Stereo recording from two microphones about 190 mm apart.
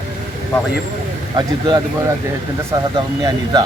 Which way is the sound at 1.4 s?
20° right (ahead or behind).